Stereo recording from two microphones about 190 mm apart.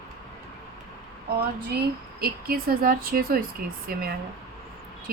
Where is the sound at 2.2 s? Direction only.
50° right (ahead or behind).